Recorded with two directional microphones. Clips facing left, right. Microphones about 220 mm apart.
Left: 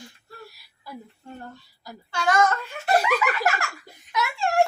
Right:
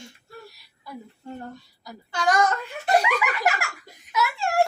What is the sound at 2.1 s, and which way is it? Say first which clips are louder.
Giggle: even; 15° right (ahead or behind).